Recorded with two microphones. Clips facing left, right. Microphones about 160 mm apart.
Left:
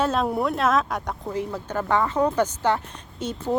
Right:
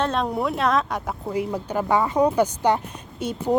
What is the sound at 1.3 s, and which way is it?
Speech, 15° right (ahead or behind).